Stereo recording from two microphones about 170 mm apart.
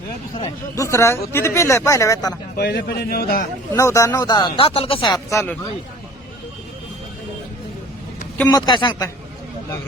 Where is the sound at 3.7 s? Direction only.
20° left (ahead or behind).